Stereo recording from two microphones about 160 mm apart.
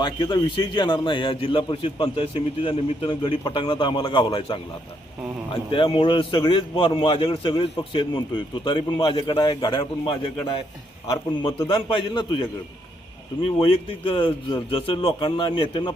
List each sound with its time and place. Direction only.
0.0 s a man's voice: 25° left (ahead or behind)
5.7 s a man's voice: 30° left (ahead or behind)
11.4 s a man's voice: 30° left (ahead or behind)